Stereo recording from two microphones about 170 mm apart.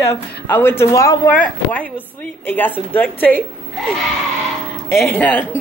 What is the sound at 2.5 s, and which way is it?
Speech, 10° left (ahead or behind).